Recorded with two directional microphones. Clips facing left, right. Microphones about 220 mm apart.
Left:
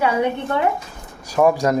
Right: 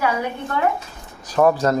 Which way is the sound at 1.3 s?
10° left (ahead or behind).